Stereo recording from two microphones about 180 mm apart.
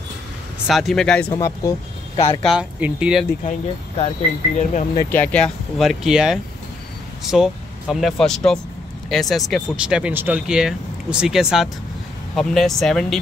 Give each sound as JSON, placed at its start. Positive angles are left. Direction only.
{"t": 0.7, "sound": "speech", "side_deg": 0}
{"t": 1.3, "sound": "speech", "side_deg": 15}
{"t": 2.1, "sound": "speech", "side_deg": 35}
{"t": 2.4, "sound": "speech", "side_deg": -5}
{"t": 4.6, "sound": "speech", "side_deg": 40}
{"t": 5.1, "sound": "speech", "side_deg": 10}